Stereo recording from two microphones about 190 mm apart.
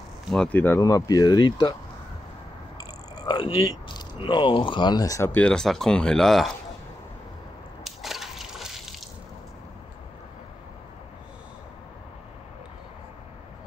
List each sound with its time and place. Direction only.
0.3 s speech: 5° left (ahead or behind); by 1.8 s 20° left (ahead or behind)
2.8 s speech: 20° left (ahead or behind); by 6.5 s centre (ahead or behind)
7.8 s a sound: centre (ahead or behind)